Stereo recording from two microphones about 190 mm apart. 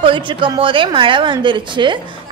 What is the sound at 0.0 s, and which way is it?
A woman's voice, 25° right (ahead or behind).